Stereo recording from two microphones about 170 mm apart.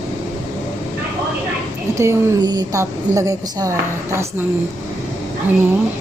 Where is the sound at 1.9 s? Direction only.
20° right (ahead or behind).